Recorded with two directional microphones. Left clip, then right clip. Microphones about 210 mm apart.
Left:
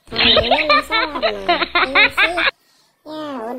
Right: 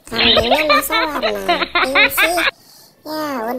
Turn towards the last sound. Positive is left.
turn(degrees=-20)  # may be behind; listen again after turning